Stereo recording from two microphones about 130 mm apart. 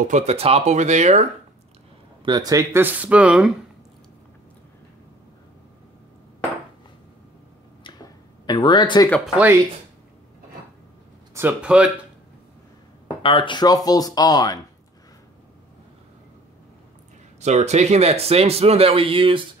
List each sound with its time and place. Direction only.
0.1 s speech: 50° right (ahead or behind)
2.2 s speech: 30° right (ahead or behind)
2.7 s speech: 15° right (ahead or behind)
7.8 s a sound: 35° left (ahead or behind)
9.2 s speech: 5° right (ahead or behind)
11.3 s speech: 10° right (ahead or behind)
13.2 s speech: 40° left (ahead or behind)
17.4 s speech: 60° right (ahead or behind); by 19.4 s 45° right (ahead or behind)